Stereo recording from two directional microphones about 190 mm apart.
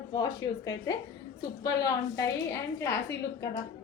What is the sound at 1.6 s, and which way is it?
A woman's voice, 20° left (ahead or behind).